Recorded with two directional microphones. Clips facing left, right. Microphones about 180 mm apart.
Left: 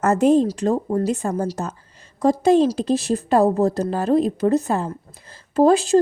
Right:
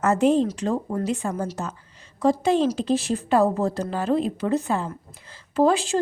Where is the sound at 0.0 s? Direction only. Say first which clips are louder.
Left 3 dB; 40° left (ahead or behind).